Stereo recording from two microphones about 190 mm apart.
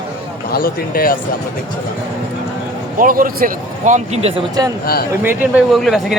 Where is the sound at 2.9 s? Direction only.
45° right (ahead or behind).